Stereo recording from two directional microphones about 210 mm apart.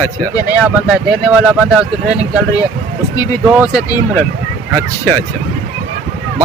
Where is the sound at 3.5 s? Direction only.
5° right (ahead or behind).